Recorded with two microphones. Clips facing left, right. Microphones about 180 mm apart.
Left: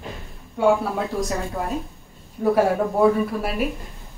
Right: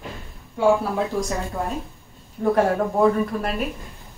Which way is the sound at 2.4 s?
5° left (ahead or behind).